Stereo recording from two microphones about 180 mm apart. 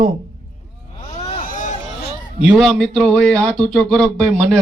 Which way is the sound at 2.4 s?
5° right (ahead or behind).